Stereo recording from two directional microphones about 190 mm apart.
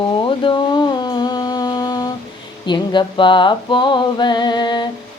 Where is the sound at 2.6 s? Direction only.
25° left (ahead or behind).